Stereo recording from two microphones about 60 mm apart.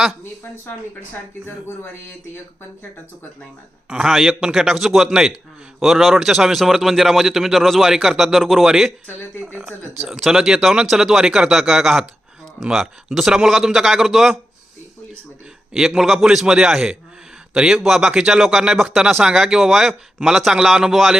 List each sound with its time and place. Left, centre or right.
1.5 s speech: left
3.8 s a man's voice: centre
10.1 s a man's voice: centre
15.7 s a man's voice: centre